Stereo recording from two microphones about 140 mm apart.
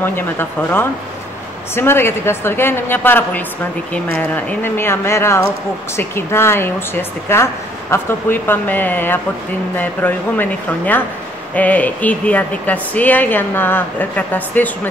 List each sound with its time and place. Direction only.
0.0 s speech: 15° left (ahead or behind)